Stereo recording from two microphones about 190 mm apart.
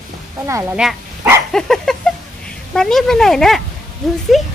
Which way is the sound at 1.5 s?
Centre (ahead or behind).